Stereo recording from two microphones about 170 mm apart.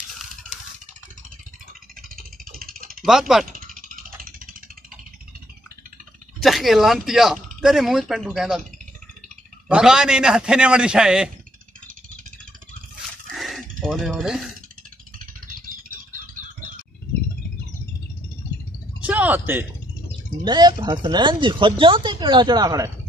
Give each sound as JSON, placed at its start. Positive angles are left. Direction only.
{"t": 2.0, "sound": "a sound", "side_deg": -60}
{"t": 3.1, "sound": "a man's voice", "side_deg": -5}
{"t": 3.5, "sound": "vehicle", "side_deg": -55}
{"t": 6.4, "sound": "a man's voice", "side_deg": 0}
{"t": 9.7, "sound": "a man's voice", "side_deg": -5}
{"t": 13.3, "sound": "dog", "side_deg": 0}
{"t": 15.4, "sound": "a sound", "side_deg": -55}
{"t": 18.9, "sound": "a sound", "side_deg": -10}
{"t": 20.4, "sound": "speech", "side_deg": -25}